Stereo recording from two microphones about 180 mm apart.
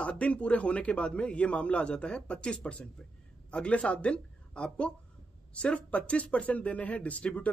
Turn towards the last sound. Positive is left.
turn(degrees=5)  # may be behind; listen again after turning